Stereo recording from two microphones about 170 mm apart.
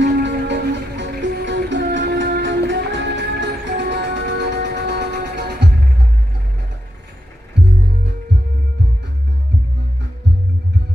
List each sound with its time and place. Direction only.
0.0 s music: 90° right; by 5.7 s 75° right (ahead or behind)